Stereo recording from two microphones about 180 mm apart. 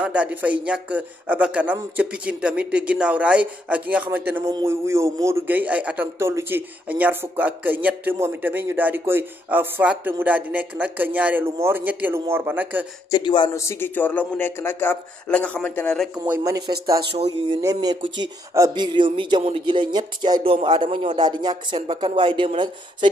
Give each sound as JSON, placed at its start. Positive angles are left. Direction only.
{"t": 0.0, "sound": "a man's voice", "side_deg": -5}
{"t": 13.1, "sound": "speech", "side_deg": 25}
{"t": 13.6, "sound": "speech", "side_deg": 15}
{"t": 16.3, "sound": "speech", "side_deg": -20}
{"t": 17.1, "sound": "speech", "side_deg": -30}
{"t": 17.6, "sound": "speech", "side_deg": -20}